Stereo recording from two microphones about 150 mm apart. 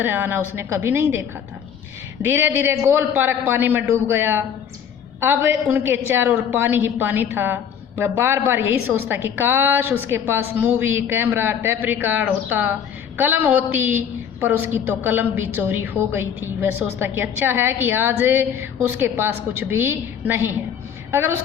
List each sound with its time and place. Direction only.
0.0 s a woman's voice: 15° right (ahead or behind)
2.2 s a woman's voice: 15° right (ahead or behind)